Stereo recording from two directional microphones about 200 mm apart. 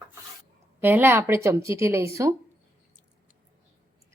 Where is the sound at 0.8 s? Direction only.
10° right (ahead or behind).